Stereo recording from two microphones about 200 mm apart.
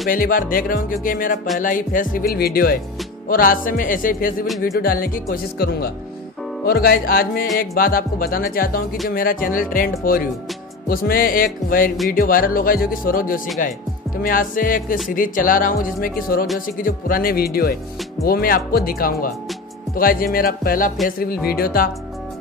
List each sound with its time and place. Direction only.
0.1 s speech: 45° left (ahead or behind)